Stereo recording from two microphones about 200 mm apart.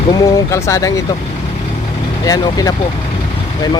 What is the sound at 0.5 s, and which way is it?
Speech, 15° left (ahead or behind).